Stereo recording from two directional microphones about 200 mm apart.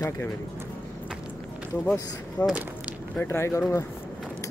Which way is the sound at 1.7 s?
10° left (ahead or behind).